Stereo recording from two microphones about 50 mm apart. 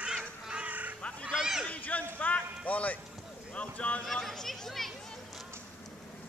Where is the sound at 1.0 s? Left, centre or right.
Left.